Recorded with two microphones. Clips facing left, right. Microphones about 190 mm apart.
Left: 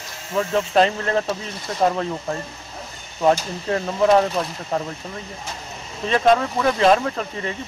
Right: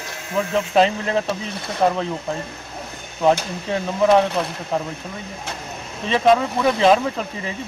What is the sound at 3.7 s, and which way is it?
Speech, centre (ahead or behind).